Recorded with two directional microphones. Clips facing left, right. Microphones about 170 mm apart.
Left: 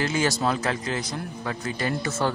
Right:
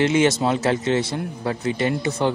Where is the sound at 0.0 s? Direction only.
25° right (ahead or behind).